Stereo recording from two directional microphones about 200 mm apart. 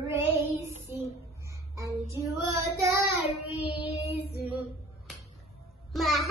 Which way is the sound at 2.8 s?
15° right (ahead or behind).